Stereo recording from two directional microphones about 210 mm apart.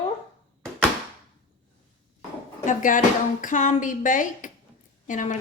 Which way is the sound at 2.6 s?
40° left (ahead or behind).